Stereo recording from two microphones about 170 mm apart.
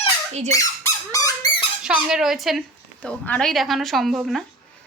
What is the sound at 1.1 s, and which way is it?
Squeak, 20° left (ahead or behind).